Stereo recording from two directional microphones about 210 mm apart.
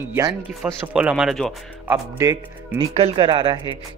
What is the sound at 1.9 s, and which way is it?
Speech, 15° right (ahead or behind).